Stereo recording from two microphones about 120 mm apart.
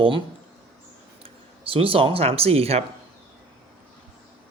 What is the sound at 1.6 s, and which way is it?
A man's voice, 50° right (ahead or behind).